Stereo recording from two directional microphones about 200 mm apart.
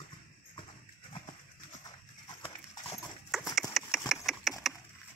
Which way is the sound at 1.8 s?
25° left (ahead or behind).